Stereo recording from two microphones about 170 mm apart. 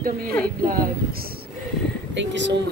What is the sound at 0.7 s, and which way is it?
Speech, 60° right (ahead or behind).